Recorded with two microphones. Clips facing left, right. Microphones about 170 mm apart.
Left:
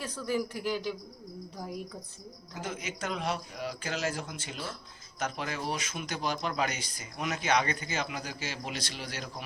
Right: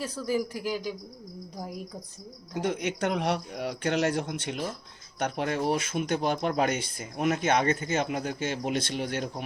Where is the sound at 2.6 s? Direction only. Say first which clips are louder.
Right 9 dB; 70° right (ahead or behind).